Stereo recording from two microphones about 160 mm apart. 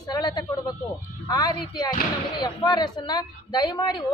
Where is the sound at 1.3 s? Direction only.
25° left (ahead or behind).